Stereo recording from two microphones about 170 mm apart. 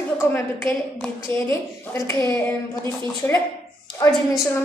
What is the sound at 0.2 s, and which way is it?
Speech, 15° left (ahead or behind).